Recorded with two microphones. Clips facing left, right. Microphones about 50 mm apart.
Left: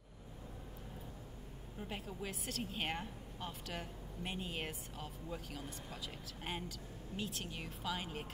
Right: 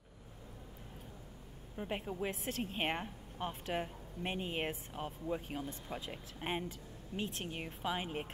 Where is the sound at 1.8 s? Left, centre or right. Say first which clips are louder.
Right 6 dB; right.